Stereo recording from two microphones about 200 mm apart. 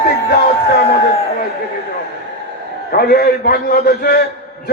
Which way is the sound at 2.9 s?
50° left (ahead or behind).